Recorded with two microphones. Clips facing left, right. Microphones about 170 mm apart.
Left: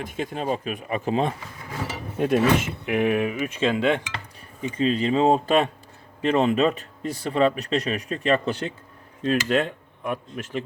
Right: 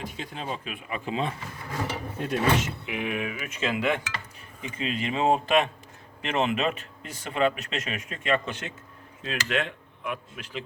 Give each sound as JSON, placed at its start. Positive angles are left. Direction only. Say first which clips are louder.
{"t": 0.0, "sound": "speech", "louder": "left 7 dB", "side_deg": 50}